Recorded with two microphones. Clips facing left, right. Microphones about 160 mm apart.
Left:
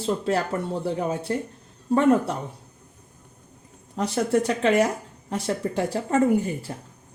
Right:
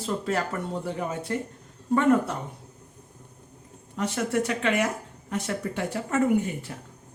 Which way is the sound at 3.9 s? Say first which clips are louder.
Left 4 dB; 35° left (ahead or behind).